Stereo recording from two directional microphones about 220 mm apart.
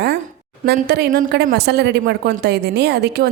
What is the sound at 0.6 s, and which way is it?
A woman's voice, 45° right (ahead or behind).